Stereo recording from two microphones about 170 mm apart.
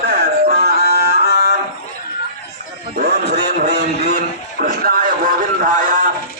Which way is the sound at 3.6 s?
70° right (ahead or behind).